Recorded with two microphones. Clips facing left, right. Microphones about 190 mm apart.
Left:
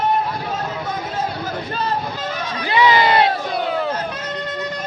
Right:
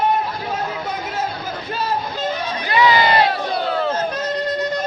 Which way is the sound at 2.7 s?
25° left (ahead or behind).